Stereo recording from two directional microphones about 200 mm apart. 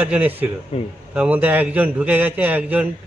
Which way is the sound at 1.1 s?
5° right (ahead or behind).